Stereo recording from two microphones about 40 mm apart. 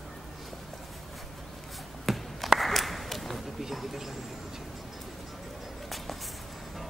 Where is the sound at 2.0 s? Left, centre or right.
Centre.